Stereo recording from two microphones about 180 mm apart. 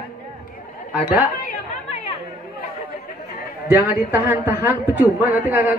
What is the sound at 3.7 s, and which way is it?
A man's voice, 10° right (ahead or behind).